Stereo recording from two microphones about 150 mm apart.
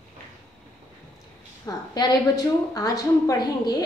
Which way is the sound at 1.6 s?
25° left (ahead or behind).